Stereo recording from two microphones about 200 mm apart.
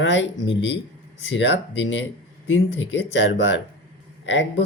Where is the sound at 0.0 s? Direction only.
65° left (ahead or behind).